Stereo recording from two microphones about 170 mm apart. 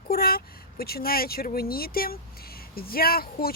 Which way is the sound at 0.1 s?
60° left (ahead or behind).